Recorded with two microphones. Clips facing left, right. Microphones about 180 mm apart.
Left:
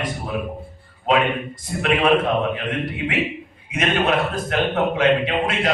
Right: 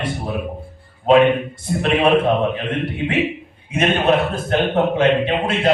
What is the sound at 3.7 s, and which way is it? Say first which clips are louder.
A man's voice: right 4 dB; 30° right (ahead or behind).